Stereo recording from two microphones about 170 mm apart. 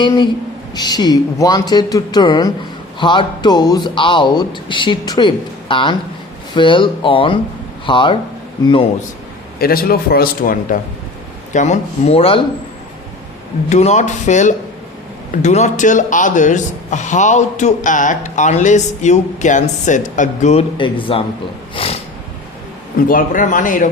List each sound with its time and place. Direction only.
0.0 s speech: 25° left (ahead or behind)
9.6 s a man's voice: 60° left (ahead or behind)
11.5 s speech: 45° left (ahead or behind)
13.7 s a man's voice: 40° left (ahead or behind)
23.0 s a man's voice: 55° left (ahead or behind)